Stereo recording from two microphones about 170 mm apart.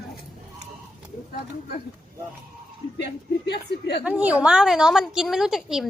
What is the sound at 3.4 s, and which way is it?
Speech, 75° left (ahead or behind).